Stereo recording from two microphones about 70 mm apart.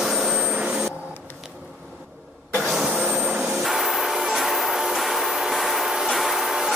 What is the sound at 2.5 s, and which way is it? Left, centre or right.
Vehicle, centre.